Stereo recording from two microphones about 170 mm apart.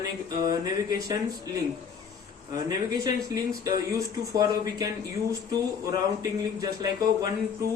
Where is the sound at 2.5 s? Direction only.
20° right (ahead or behind).